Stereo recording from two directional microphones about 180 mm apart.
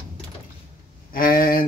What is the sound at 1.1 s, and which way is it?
Speech, 55° left (ahead or behind).